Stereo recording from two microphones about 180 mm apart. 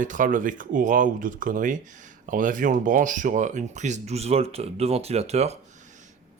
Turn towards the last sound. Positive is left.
turn(degrees=-35)  # may be behind; listen again after turning